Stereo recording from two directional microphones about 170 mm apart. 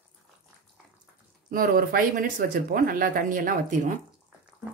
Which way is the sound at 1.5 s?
60° right (ahead or behind).